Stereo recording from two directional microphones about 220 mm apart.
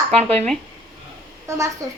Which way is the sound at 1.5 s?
15° right (ahead or behind).